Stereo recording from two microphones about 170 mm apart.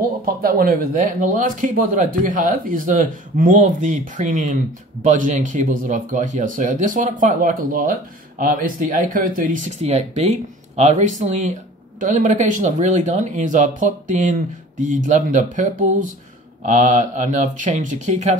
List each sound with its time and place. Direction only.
0.2 s speech: 60° right (ahead or behind); by 18.4 s 40° right (ahead or behind)